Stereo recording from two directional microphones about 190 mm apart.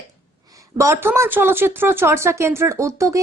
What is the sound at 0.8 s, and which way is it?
Speech, 15° right (ahead or behind).